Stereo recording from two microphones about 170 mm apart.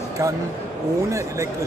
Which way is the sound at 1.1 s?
15° right (ahead or behind).